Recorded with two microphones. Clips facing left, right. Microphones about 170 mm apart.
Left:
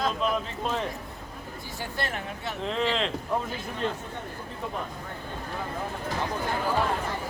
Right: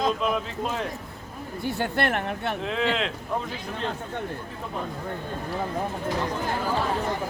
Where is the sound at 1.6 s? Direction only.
65° right (ahead or behind).